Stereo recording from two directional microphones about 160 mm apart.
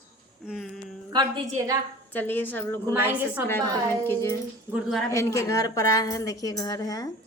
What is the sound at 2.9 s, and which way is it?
Speech, 10° right (ahead or behind).